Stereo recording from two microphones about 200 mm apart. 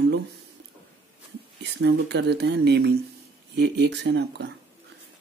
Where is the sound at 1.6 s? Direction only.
55° right (ahead or behind).